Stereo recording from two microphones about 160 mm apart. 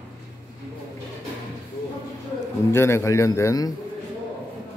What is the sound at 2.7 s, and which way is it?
A man's voice, 15° left (ahead or behind).